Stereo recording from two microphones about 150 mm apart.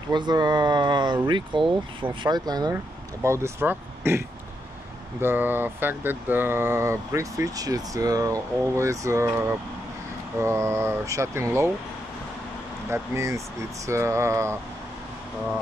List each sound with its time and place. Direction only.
0.1 s speech: 30° right (ahead or behind)
5.2 s speech: 15° right (ahead or behind)
12.9 s speech: 20° right (ahead or behind)